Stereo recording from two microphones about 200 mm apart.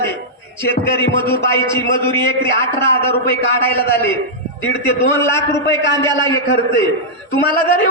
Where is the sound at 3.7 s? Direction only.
10° left (ahead or behind).